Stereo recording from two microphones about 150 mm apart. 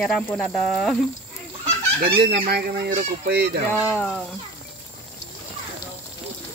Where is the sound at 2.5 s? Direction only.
85° right.